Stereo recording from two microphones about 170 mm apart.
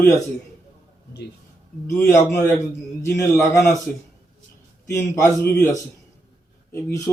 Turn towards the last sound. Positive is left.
turn(degrees=15)  # may be behind; listen again after turning